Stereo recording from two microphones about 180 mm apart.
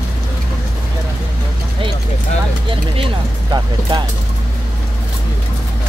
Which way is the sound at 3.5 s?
25° right (ahead or behind).